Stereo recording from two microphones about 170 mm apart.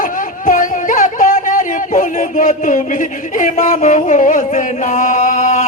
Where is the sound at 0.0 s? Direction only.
55° left (ahead or behind).